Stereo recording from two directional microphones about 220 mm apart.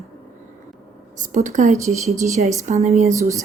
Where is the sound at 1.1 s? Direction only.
35° right (ahead or behind).